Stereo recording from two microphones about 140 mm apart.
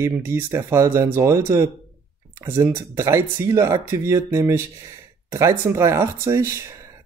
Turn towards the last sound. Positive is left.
turn(degrees=-20)  # may be behind; listen again after turning